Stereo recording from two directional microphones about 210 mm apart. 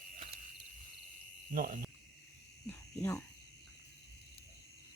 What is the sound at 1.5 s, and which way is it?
Speech, 45° right (ahead or behind).